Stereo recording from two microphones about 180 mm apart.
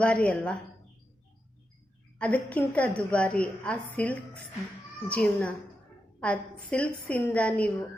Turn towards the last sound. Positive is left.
turn(degrees=5)  # may be behind; listen again after turning